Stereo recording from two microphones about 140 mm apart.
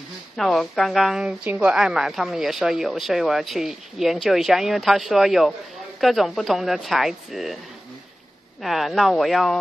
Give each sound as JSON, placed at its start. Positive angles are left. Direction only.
{"t": 0.4, "sound": "a woman's voice", "side_deg": 0}
{"t": 8.6, "sound": "a woman's voice", "side_deg": 0}